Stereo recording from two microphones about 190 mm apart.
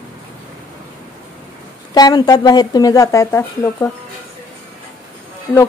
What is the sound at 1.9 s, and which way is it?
Speech, 20° left (ahead or behind).